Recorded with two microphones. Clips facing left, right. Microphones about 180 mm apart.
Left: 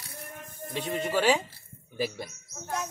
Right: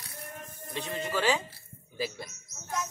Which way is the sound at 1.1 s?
25° left (ahead or behind).